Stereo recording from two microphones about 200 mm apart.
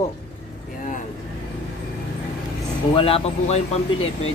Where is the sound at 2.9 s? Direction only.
30° left (ahead or behind).